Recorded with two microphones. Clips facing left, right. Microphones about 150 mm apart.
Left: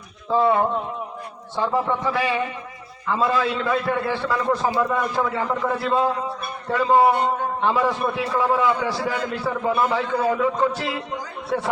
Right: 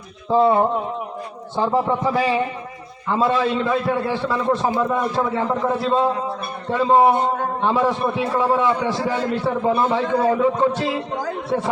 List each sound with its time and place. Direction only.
0.3 s a man's voice: 25° right (ahead or behind)